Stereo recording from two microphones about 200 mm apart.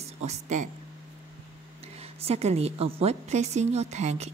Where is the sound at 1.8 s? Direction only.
30° right (ahead or behind).